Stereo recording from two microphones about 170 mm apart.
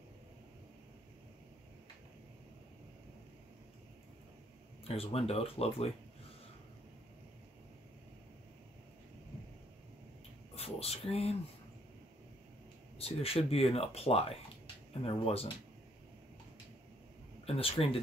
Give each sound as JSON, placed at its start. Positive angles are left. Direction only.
{"t": 4.8, "sound": "speech", "side_deg": 35}
{"t": 10.5, "sound": "a sound", "side_deg": 35}
{"t": 13.0, "sound": "speech", "side_deg": 35}
{"t": 17.5, "sound": "speech", "side_deg": 35}